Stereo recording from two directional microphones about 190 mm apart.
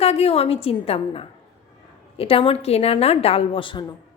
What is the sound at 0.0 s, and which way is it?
A woman's voice, 35° left (ahead or behind).